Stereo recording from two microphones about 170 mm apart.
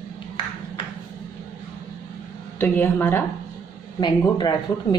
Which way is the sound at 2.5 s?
10° left (ahead or behind).